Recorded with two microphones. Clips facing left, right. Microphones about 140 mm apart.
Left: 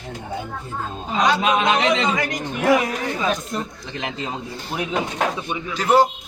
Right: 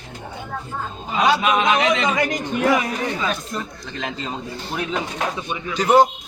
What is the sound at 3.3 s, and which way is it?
Speech, 20° left (ahead or behind).